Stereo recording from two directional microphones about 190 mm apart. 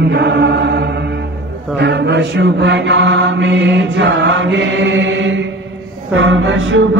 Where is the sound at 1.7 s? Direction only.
65° right (ahead or behind).